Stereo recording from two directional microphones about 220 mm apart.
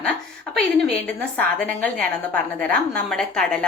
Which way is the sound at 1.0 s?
5° left (ahead or behind).